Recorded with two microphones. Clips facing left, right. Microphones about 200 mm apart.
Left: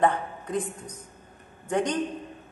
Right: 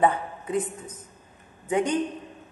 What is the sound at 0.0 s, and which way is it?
A woman's voice, 5° right (ahead or behind).